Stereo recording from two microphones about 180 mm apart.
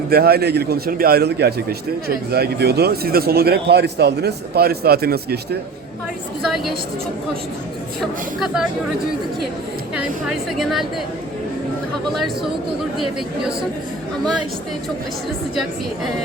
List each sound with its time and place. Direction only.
0.1 s speech: 60° right (ahead or behind)
8.0 s a woman's voice: centre (ahead or behind)
9.9 s a woman's voice: 5° right (ahead or behind)
12.1 s a woman's voice: centre (ahead or behind)